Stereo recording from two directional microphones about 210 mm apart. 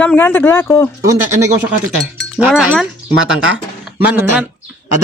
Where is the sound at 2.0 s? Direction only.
5° right (ahead or behind).